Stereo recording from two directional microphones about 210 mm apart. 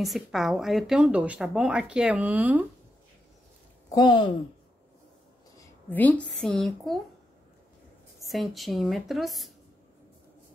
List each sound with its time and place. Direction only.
0.0 s a woman's voice: centre (ahead or behind)
3.9 s speech: 20° left (ahead or behind)
5.6 s a woman's voice: 10° left (ahead or behind)
8.2 s a woman's voice: centre (ahead or behind)